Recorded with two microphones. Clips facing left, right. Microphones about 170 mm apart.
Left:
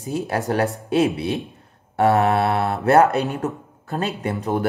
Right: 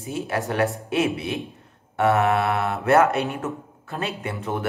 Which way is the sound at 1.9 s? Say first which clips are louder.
Left 2 dB; 35° left (ahead or behind).